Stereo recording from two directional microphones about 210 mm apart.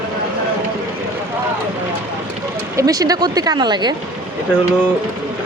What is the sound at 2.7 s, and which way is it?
Speech, 15° right (ahead or behind).